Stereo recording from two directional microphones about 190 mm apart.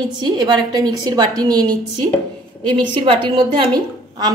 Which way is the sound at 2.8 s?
25° right (ahead or behind).